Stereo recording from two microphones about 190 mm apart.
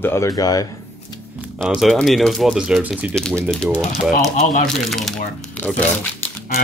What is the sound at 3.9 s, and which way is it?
Speech, 40° left (ahead or behind).